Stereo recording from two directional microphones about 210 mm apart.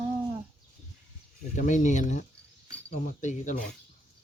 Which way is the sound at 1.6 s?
35° left (ahead or behind).